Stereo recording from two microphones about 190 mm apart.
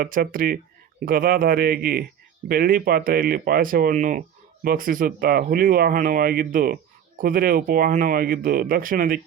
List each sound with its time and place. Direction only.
0.0 s speech: 50° right (ahead or behind)